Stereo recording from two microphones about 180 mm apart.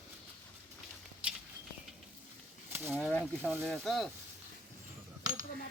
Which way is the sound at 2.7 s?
10° right (ahead or behind).